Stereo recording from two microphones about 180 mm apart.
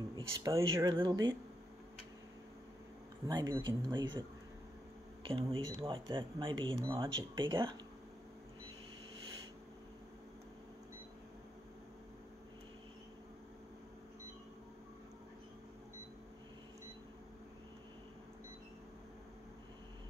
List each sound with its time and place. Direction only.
0.1 s speech: 20° right (ahead or behind)
3.3 s speech: 20° right (ahead or behind)
5.2 s speech: 30° right (ahead or behind)